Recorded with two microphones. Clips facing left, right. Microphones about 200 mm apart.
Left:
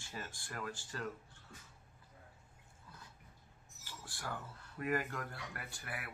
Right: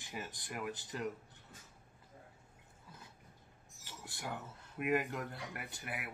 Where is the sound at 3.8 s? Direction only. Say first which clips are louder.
Right 1 dB; 20° right (ahead or behind).